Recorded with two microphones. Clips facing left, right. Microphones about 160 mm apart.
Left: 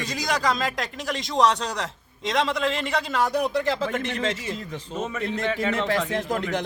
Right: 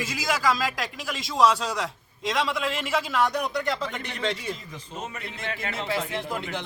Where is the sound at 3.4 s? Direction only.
30° left (ahead or behind).